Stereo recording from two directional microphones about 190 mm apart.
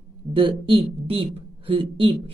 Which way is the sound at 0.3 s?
30° right (ahead or behind).